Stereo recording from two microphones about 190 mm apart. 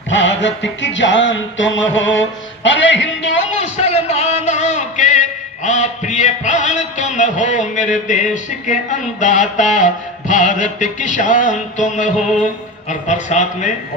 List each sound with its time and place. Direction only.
0.1 s music: 70° left (ahead or behind)
3.5 s a sound: 35° left (ahead or behind)
5.6 s a man's voice: 40° left (ahead or behind)